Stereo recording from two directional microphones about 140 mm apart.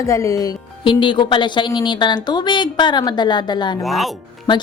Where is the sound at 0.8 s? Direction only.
35° left (ahead or behind).